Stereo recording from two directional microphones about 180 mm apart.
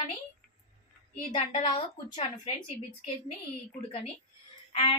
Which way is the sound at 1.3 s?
30° left (ahead or behind).